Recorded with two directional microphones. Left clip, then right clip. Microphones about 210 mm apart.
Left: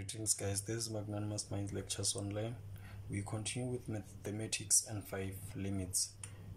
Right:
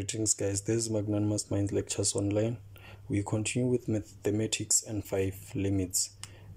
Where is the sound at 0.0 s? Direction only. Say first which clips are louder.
Right 10 dB; 35° right (ahead or behind).